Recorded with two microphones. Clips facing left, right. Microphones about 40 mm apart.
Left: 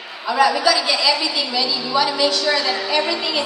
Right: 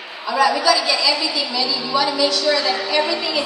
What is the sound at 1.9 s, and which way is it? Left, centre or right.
Speech, left.